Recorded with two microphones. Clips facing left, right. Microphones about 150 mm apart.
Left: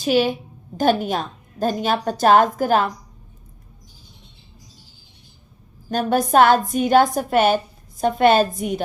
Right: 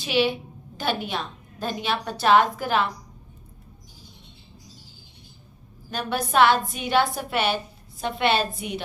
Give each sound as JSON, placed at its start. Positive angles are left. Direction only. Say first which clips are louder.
{"t": 0.0, "sound": "a woman's voice", "louder": "left 5 dB", "side_deg": 45}
{"t": 5.9, "sound": "a woman's voice", "louder": "left 7 dB", "side_deg": 45}